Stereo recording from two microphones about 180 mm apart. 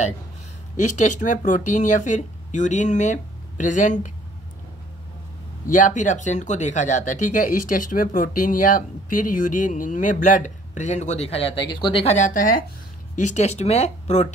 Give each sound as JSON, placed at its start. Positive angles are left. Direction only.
{"t": 0.7, "sound": "speech", "side_deg": 40}
{"t": 5.7, "sound": "speech", "side_deg": 45}